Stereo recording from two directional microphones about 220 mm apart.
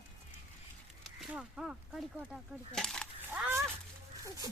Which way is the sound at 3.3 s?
10° right (ahead or behind).